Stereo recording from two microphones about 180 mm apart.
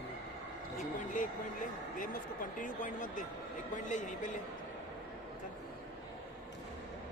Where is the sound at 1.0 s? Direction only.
45° left (ahead or behind).